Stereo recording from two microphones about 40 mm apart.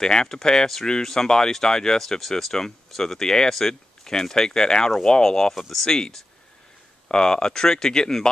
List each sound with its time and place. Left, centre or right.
0.0 s speech: centre
5.5 s speech: centre
5.9 s speech: centre